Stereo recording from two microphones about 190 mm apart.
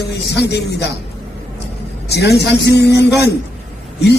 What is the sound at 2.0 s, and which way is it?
A man's voice, 60° left (ahead or behind).